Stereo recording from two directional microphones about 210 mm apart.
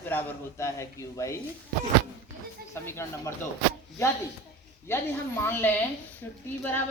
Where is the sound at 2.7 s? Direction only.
10° left (ahead or behind).